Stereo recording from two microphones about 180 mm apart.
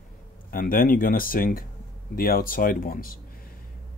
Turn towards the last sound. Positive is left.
turn(degrees=50)  # may be behind; listen again after turning